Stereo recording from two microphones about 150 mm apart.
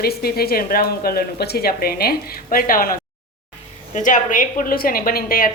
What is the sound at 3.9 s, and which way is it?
A woman's voice, 60° left (ahead or behind).